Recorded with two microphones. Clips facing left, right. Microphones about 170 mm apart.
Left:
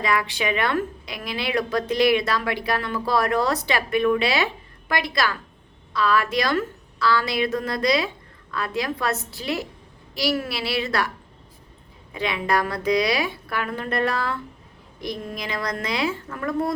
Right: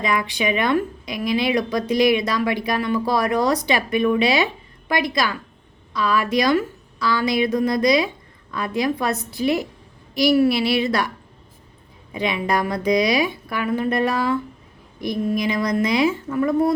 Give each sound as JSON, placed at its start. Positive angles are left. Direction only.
{"t": 0.0, "sound": "speech", "side_deg": -20}
{"t": 12.1, "sound": "speech", "side_deg": -15}